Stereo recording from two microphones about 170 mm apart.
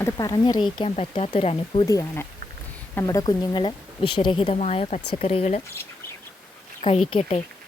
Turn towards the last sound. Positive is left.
turn(degrees=35)  # may be behind; listen again after turning